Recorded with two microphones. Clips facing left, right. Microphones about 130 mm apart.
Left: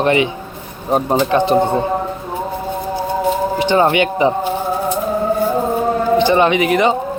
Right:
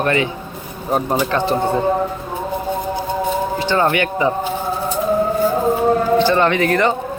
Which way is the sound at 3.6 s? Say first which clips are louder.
Left 4 dB; 20° left (ahead or behind).